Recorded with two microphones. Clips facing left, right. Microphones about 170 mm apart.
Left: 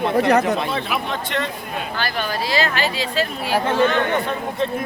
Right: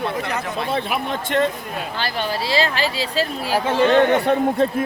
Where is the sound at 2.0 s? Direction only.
25° right (ahead or behind).